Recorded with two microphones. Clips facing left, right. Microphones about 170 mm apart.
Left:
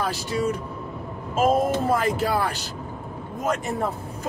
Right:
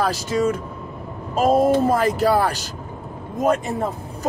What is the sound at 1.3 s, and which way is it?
Speech, 35° right (ahead or behind).